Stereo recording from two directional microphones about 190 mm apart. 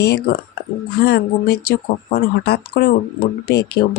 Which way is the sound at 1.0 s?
60° left (ahead or behind).